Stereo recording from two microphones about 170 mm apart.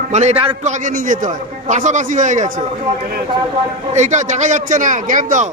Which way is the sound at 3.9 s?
45° right (ahead or behind).